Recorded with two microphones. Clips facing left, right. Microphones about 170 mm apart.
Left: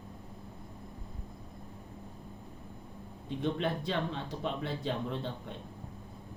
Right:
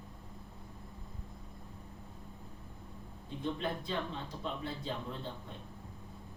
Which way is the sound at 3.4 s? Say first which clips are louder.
Left 4 dB; 70° left (ahead or behind).